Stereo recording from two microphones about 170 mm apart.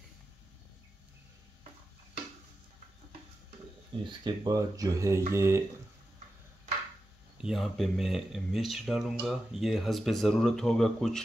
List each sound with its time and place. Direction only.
4.0 s speech: 25° right (ahead or behind)
7.3 s speech: 5° right (ahead or behind)